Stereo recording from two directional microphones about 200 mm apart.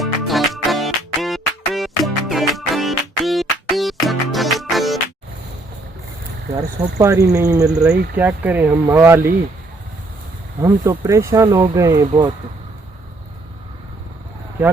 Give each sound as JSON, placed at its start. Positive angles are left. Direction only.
{"t": 0.0, "sound": "music", "side_deg": 0}
{"t": 7.0, "sound": "speech", "side_deg": -15}
{"t": 10.6, "sound": "speech", "side_deg": -15}